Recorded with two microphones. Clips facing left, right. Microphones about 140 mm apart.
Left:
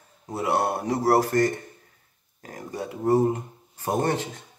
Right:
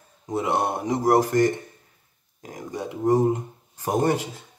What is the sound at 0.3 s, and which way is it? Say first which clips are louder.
Speech: right 1 dB; 20° right (ahead or behind).